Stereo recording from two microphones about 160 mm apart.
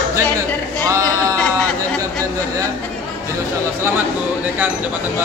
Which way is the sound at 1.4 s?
5° left (ahead or behind).